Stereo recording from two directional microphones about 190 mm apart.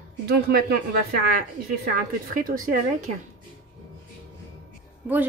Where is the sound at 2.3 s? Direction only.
45° right (ahead or behind).